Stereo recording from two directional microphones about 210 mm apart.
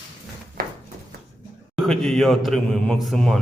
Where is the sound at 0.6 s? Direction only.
40° right (ahead or behind).